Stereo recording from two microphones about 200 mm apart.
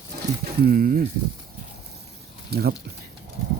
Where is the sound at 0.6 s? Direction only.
45° right (ahead or behind).